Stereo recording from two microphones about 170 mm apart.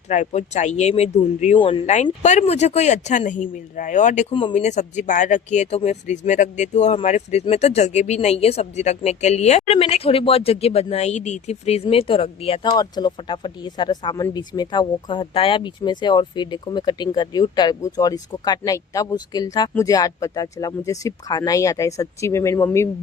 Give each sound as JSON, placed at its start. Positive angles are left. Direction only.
{"t": 0.1, "sound": "speech", "side_deg": 45}
{"t": 1.5, "sound": "speech", "side_deg": 30}
{"t": 2.2, "sound": "speech", "side_deg": 45}
{"t": 12.6, "sound": "speech", "side_deg": 25}